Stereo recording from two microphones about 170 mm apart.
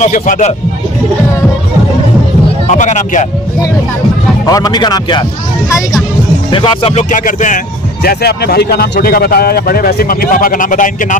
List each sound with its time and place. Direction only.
0.0 s speech: 45° left (ahead or behind)
2.7 s speech: 45° left (ahead or behind)
4.5 s speech: 20° left (ahead or behind)
6.5 s music: 30° left (ahead or behind)
7.1 s speech: 50° left (ahead or behind)